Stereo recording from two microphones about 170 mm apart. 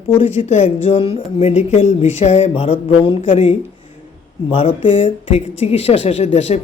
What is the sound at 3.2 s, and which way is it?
Speech, 50° left (ahead or behind).